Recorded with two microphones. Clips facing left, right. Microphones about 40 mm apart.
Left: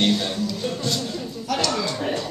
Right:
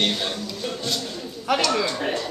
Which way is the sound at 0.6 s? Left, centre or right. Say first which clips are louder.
Left 2 dB; centre.